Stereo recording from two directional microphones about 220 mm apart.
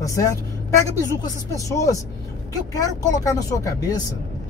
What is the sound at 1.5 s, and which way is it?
Speech, 15° left (ahead or behind).